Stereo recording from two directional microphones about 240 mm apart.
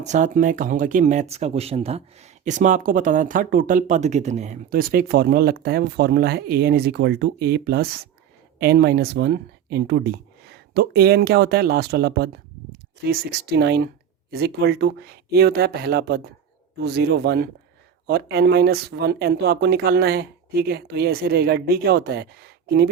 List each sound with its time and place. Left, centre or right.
0.0 s speech: right